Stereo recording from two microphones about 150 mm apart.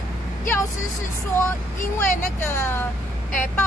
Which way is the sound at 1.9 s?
15° left (ahead or behind).